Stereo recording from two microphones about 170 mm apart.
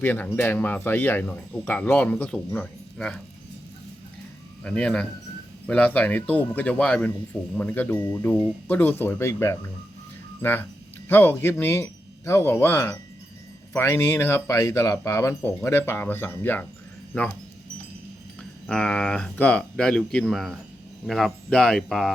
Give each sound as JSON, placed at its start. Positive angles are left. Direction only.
{"t": 0.0, "sound": "speech", "side_deg": 10}
{"t": 4.6, "sound": "speech", "side_deg": 5}
{"t": 18.7, "sound": "speech", "side_deg": 5}